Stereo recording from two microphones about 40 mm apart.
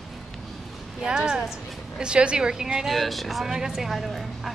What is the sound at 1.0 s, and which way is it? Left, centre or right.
A woman's voice, centre.